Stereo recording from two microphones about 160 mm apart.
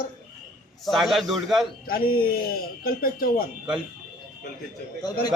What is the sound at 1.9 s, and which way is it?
Speech, 70° left (ahead or behind).